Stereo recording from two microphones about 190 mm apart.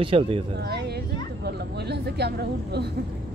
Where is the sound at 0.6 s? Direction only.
60° right (ahead or behind).